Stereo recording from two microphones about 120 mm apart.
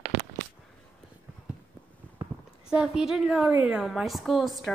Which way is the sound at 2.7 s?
5° right (ahead or behind).